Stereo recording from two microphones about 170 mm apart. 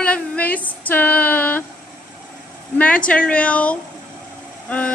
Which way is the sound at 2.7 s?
10° left (ahead or behind).